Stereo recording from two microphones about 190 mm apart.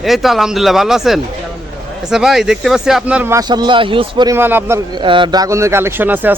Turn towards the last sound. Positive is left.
turn(degrees=-10)  # may be behind; listen again after turning